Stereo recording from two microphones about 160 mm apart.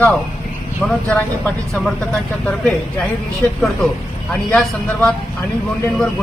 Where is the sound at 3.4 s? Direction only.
10° left (ahead or behind).